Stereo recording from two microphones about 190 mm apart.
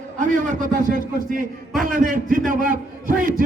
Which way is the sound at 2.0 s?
45° right (ahead or behind).